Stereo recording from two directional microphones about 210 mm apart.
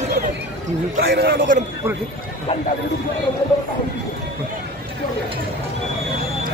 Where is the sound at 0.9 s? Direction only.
45° right (ahead or behind).